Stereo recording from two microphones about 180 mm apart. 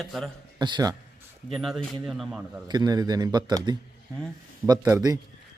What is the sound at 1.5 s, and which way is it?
Speech, centre (ahead or behind).